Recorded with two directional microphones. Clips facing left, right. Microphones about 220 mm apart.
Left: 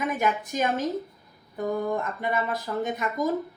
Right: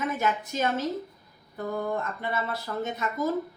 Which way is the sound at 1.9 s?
15° left (ahead or behind).